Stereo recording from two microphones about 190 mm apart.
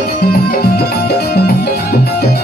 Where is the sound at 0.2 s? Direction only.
55° left (ahead or behind).